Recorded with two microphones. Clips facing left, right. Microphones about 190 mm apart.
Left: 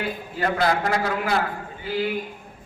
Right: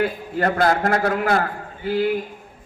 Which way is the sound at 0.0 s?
50° right (ahead or behind).